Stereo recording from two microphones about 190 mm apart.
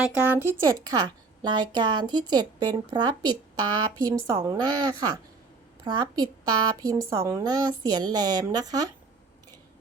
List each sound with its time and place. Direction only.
0.0 s a woman's voice: 10° right (ahead or behind)